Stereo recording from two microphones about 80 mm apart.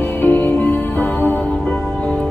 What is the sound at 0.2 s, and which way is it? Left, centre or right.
Music, left.